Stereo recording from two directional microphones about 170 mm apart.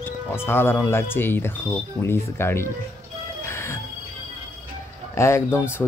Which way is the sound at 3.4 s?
15° left (ahead or behind).